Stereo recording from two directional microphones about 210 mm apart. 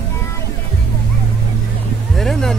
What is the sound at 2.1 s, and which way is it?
Vehicle, centre (ahead or behind).